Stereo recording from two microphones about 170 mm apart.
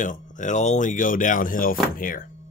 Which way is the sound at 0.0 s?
50° left (ahead or behind).